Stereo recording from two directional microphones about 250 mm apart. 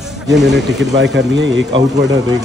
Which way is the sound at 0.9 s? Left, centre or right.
Right.